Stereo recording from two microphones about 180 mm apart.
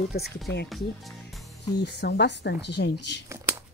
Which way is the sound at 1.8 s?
65° left (ahead or behind).